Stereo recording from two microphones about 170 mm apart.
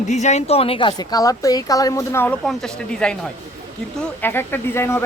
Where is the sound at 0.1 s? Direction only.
45° left (ahead or behind); by 2.3 s 15° left (ahead or behind).